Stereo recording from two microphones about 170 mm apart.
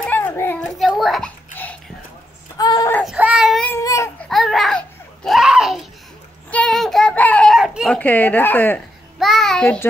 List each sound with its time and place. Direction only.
0.0 s children playing: 10° left (ahead or behind)
0.7 s children playing: centre (ahead or behind)
1.5 s a sound: 10° left (ahead or behind)
2.5 s a sound: 20° left (ahead or behind)
3.2 s child singing: 5° right (ahead or behind)
3.6 s baby cry: 15° left (ahead or behind)
4.3 s a sound: centre (ahead or behind)
7.9 s speech: 10° left (ahead or behind)
9.2 s child singing: centre (ahead or behind)